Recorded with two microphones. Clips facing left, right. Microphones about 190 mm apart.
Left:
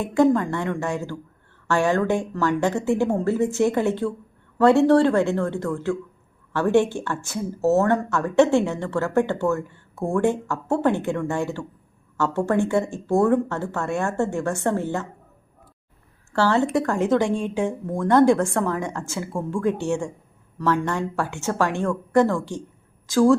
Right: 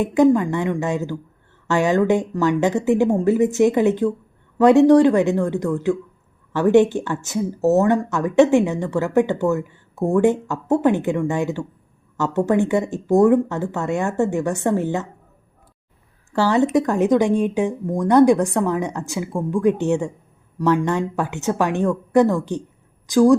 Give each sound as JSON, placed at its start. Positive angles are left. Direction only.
{"t": 0.0, "sound": "speech", "side_deg": -20}
{"t": 16.3, "sound": "speech", "side_deg": -15}